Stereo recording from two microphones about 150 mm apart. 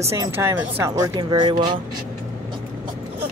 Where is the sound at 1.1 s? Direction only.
30° right (ahead or behind).